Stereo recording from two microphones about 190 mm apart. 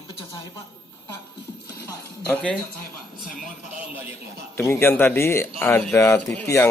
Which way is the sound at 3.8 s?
10° right (ahead or behind).